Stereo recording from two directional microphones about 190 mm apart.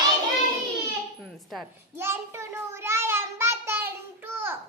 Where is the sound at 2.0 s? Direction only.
15° right (ahead or behind).